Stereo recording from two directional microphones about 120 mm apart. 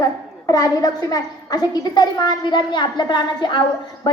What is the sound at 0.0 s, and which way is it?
A woman's voice, 30° left (ahead or behind).